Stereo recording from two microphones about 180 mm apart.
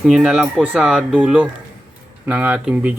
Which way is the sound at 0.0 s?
5° right (ahead or behind).